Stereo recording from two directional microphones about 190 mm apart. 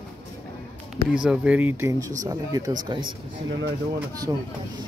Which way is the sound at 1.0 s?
5° right (ahead or behind).